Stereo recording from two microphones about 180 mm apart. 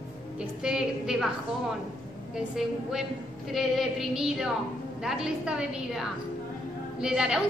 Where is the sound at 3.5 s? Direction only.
Centre (ahead or behind).